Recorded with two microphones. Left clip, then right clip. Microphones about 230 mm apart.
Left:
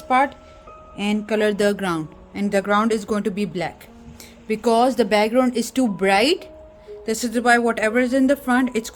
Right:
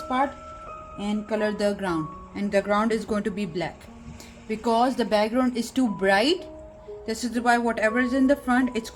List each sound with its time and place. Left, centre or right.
0.9 s speech: left